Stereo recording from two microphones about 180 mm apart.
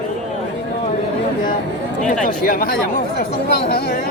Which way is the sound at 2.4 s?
55° left (ahead or behind).